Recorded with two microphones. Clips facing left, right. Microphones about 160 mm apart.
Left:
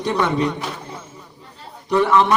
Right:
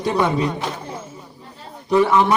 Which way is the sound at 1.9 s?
15° right (ahead or behind).